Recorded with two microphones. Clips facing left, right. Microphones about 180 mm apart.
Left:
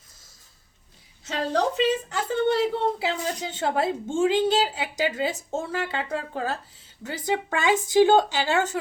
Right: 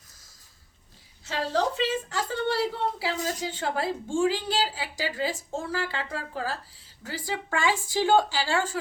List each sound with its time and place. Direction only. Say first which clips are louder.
1.2 s a woman's voice: left 2 dB; 20° left (ahead or behind)